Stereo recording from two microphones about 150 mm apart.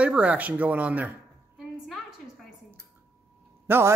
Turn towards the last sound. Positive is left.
turn(degrees=-15)  # may be behind; listen again after turning